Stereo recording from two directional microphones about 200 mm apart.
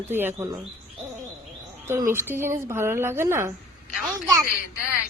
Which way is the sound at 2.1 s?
10° right (ahead or behind).